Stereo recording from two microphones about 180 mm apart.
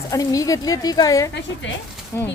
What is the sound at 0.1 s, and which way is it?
A woman's voice, 20° left (ahead or behind).